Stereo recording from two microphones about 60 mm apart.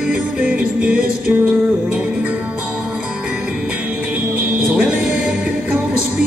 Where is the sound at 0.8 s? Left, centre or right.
Centre.